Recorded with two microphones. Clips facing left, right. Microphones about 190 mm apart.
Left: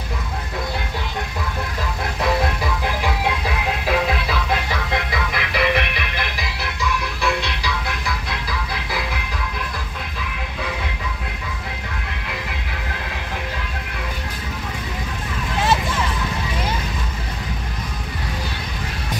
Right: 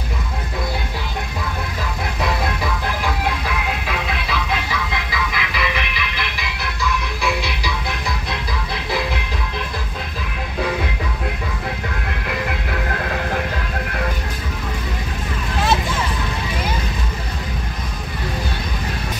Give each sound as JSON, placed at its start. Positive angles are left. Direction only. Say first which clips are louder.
{"t": 3.8, "sound": "music", "louder": "left 5 dB", "side_deg": 45}
{"t": 7.2, "sound": "music", "louder": "even", "side_deg": -5}